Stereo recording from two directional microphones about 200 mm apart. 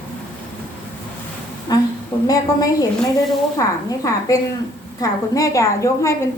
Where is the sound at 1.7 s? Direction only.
20° left (ahead or behind).